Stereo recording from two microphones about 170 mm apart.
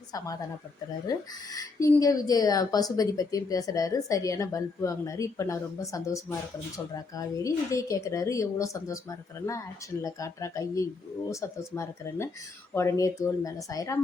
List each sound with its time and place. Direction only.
1.0 s a woman's voice: 20° left (ahead or behind)